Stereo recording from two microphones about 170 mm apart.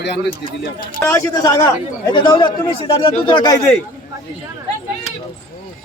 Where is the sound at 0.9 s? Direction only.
15° left (ahead or behind).